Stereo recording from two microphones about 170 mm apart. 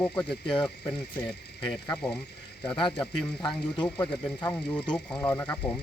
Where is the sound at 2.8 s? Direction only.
25° left (ahead or behind).